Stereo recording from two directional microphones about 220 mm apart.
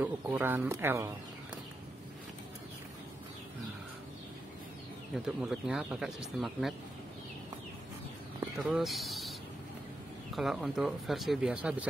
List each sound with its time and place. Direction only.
0.0 s speech: 10° right (ahead or behind)
5.1 s speech: centre (ahead or behind)
8.6 s speech: centre (ahead or behind)
10.3 s speech: centre (ahead or behind)